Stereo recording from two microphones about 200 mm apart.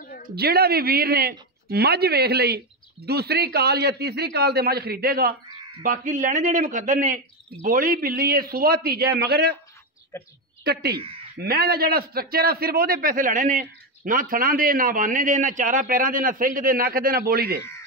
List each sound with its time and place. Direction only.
0.4 s a man's voice: 50° right (ahead or behind)
10.1 s a woman's voice: 15° left (ahead or behind)
10.6 s a man's voice: 55° right (ahead or behind)